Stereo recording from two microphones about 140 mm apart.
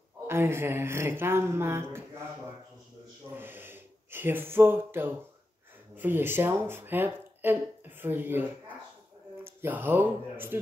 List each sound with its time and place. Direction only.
0.3 s speech: 15° right (ahead or behind)
3.3 s speech: 15° right (ahead or behind)